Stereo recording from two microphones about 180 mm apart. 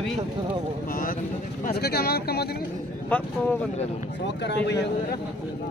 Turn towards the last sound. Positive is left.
turn(degrees=75)  # may be behind; listen again after turning